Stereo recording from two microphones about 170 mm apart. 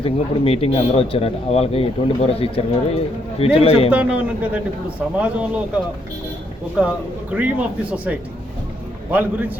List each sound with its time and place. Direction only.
0.0 s a man's voice: 35° left (ahead or behind)
3.9 s a man's voice: 10° right (ahead or behind)